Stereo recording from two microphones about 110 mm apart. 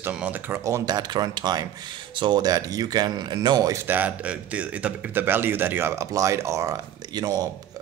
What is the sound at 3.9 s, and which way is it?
A man's voice, 15° right (ahead or behind).